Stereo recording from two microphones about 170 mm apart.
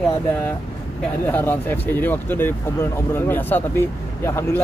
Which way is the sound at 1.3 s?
10° left (ahead or behind).